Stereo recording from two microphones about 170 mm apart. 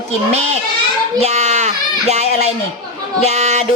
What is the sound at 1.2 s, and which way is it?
A child's voice, 40° right (ahead or behind).